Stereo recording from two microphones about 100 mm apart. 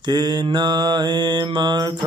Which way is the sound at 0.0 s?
45° right (ahead or behind).